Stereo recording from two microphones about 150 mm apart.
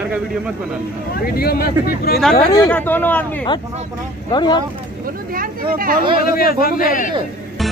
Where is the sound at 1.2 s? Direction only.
90° left.